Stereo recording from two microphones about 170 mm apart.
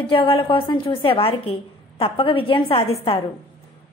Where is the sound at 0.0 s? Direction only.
30° left (ahead or behind).